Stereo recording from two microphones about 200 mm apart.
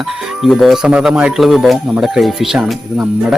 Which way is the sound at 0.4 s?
Centre (ahead or behind).